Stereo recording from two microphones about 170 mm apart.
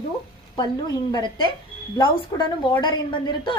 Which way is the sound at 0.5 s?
25° left (ahead or behind).